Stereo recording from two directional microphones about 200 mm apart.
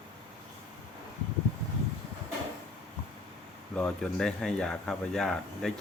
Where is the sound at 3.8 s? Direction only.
5° left (ahead or behind).